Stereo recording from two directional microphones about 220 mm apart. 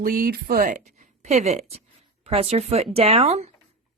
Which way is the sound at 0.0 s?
40° right (ahead or behind).